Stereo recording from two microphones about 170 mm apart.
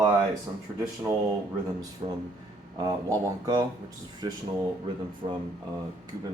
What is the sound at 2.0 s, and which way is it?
Speech, 20° right (ahead or behind).